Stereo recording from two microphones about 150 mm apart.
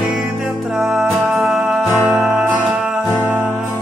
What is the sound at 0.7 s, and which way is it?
Music, centre (ahead or behind).